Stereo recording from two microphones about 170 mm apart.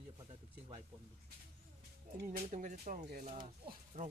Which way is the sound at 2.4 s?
45° right (ahead or behind).